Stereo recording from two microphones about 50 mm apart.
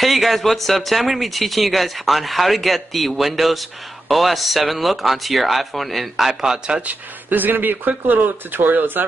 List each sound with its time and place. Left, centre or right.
0.0 s speech: centre
6.9 s speech: right